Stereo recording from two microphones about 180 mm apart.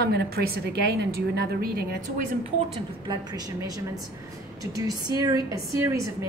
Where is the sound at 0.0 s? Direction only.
65° right (ahead or behind).